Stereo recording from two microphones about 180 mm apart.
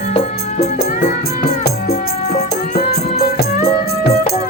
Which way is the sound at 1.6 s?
55° left (ahead or behind).